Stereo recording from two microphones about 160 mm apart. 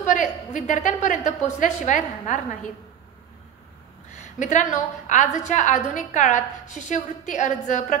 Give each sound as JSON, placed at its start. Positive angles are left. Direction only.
{"t": 0.0, "sound": "a woman's voice", "side_deg": 50}
{"t": 4.2, "sound": "a woman's voice", "side_deg": 50}